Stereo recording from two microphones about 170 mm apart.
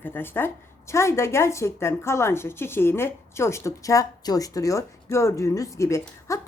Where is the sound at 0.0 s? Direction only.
10° left (ahead or behind).